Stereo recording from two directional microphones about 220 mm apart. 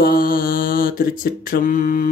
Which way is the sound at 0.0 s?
40° left (ahead or behind).